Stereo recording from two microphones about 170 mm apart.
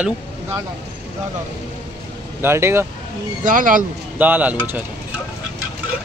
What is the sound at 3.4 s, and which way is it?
Speech, 50° right (ahead or behind).